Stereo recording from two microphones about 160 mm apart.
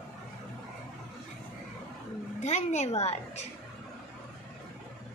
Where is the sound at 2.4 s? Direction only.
45° left (ahead or behind).